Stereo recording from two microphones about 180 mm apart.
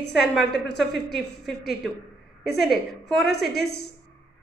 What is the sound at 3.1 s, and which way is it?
Speech, centre (ahead or behind).